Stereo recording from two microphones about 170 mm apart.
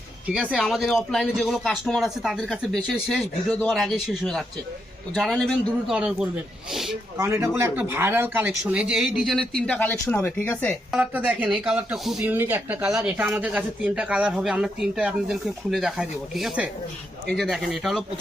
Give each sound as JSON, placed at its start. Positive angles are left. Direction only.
{"t": 0.5, "sound": "speech", "side_deg": 0}
{"t": 7.2, "sound": "speech", "side_deg": -15}
{"t": 10.9, "sound": "speech", "side_deg": -5}